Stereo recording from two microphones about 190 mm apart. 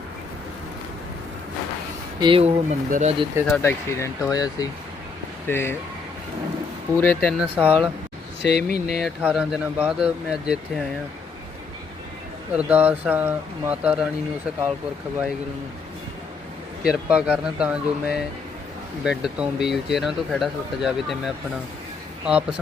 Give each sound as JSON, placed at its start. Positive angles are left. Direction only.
{"t": 2.2, "sound": "speech", "side_deg": -30}
{"t": 3.4, "sound": "speech", "side_deg": 10}
{"t": 6.9, "sound": "speech", "side_deg": 10}
{"t": 7.5, "sound": "speech", "side_deg": -10}
{"t": 8.4, "sound": "speech", "side_deg": 60}
{"t": 9.0, "sound": "speech", "side_deg": -5}
{"t": 12.5, "sound": "speech", "side_deg": -5}
{"t": 16.8, "sound": "speech", "side_deg": -5}